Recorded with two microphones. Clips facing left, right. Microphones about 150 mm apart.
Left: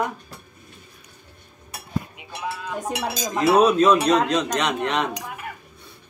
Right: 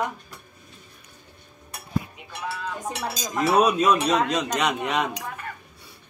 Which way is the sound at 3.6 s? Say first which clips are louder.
Left 3 dB; 10° right (ahead or behind).